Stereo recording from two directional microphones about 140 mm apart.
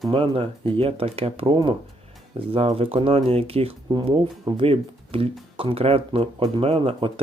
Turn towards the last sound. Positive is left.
turn(degrees=-40)  # may be behind; listen again after turning